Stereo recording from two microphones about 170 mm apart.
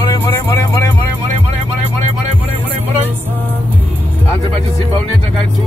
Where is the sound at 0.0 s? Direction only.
20° left (ahead or behind).